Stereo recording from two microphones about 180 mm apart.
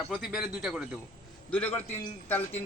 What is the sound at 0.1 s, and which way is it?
Speech, centre (ahead or behind).